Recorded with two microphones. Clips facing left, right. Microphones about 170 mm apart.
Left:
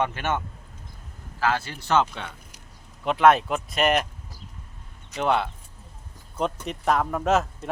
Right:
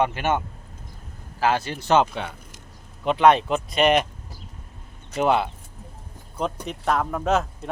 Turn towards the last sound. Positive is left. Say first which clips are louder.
# even
turn(degrees=0)  # may be behind; listen again after turning